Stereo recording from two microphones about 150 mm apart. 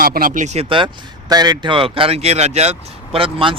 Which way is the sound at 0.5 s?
35° right (ahead or behind).